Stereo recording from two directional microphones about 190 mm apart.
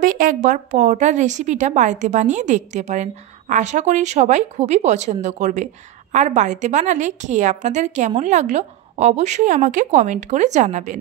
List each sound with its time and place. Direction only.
0.0 s a woman's voice: 45° right (ahead or behind)